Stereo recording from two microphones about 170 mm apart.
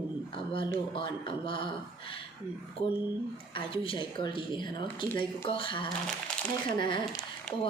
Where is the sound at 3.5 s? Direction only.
30° left (ahead or behind).